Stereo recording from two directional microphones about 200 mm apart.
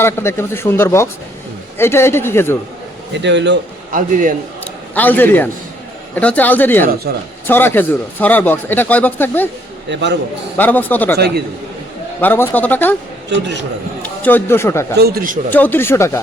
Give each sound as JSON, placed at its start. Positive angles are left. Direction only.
{"t": 0.0, "sound": "speech", "side_deg": 10}
{"t": 3.2, "sound": "speech", "side_deg": -60}
{"t": 3.9, "sound": "a man's voice", "side_deg": -40}
{"t": 4.6, "sound": "a sound", "side_deg": 10}
{"t": 6.1, "sound": "speech", "side_deg": 10}
{"t": 7.1, "sound": "speech", "side_deg": -50}
{"t": 7.4, "sound": "speech", "side_deg": 10}
{"t": 9.9, "sound": "speech", "side_deg": -60}
{"t": 10.6, "sound": "speech", "side_deg": 10}
{"t": 12.2, "sound": "speech", "side_deg": 10}
{"t": 13.3, "sound": "speech", "side_deg": -65}
{"t": 14.0, "sound": "speech", "side_deg": 10}
{"t": 14.9, "sound": "speech", "side_deg": -50}
{"t": 15.4, "sound": "speech", "side_deg": 10}